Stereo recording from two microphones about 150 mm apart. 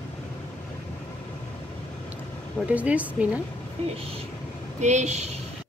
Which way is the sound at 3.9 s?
40° right (ahead or behind).